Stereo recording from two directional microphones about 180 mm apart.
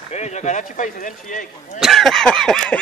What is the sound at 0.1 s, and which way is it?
Speech, 40° left (ahead or behind).